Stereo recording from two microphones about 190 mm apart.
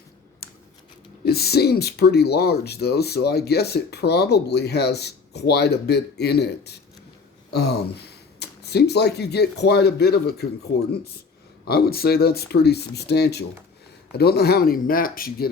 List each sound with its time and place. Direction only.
0.4 s scissors: 55° left (ahead or behind)
1.2 s speech: 55° left (ahead or behind)
11.7 s speech: 55° left (ahead or behind)